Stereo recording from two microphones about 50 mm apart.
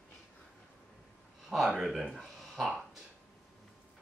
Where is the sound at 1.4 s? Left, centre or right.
Centre.